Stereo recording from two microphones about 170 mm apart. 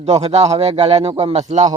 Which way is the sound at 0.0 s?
40° right (ahead or behind).